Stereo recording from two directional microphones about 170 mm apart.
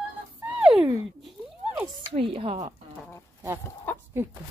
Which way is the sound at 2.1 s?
35° right (ahead or behind).